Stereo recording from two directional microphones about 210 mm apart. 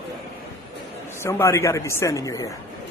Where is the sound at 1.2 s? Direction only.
15° left (ahead or behind).